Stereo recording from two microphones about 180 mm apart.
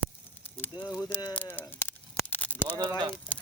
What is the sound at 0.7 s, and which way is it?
Speech, 25° left (ahead or behind).